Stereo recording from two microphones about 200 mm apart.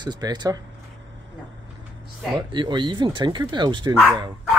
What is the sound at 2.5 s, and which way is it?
Speech, 20° right (ahead or behind).